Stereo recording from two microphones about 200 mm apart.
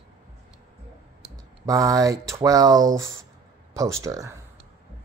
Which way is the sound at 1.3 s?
15° right (ahead or behind).